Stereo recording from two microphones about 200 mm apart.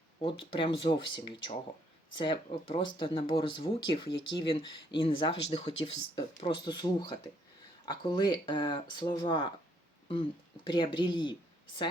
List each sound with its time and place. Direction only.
0.2 s speech: 25° left (ahead or behind)